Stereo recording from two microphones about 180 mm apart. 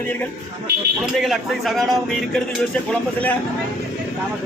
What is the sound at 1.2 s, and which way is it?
Speech, centre (ahead or behind).